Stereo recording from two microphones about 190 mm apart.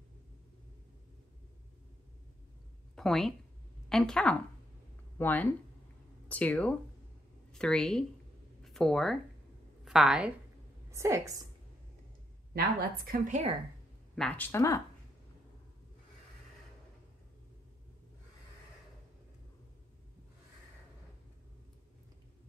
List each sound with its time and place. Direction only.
3.0 s a woman's voice: centre (ahead or behind)
10.9 s a woman's voice: 15° right (ahead or behind)
12.5 s a woman's voice: 50° right (ahead or behind)
14.1 s speech: 5° left (ahead or behind)